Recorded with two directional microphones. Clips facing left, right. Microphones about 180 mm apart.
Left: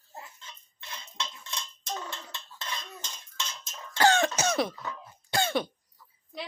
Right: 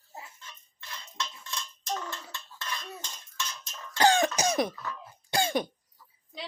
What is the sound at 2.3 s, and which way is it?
Dishes, 20° left (ahead or behind).